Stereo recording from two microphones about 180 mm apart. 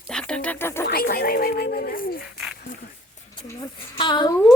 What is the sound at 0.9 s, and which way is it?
Speech, 55° left (ahead or behind).